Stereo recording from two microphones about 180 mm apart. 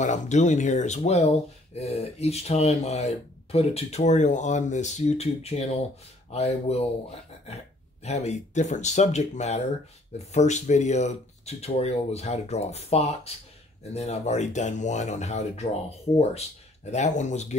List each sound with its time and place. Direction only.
0.0 s speech: 40° left (ahead or behind)
8.0 s speech: 35° left (ahead or behind)